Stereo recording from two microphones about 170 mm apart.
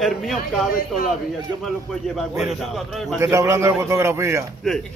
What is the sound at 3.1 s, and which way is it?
A man's voice, 15° right (ahead or behind).